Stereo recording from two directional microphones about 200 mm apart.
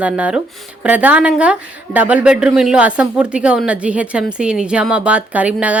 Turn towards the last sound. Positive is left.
turn(degrees=-5)  # may be behind; listen again after turning